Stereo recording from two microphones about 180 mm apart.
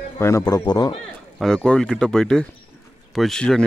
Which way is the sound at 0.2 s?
15° left (ahead or behind).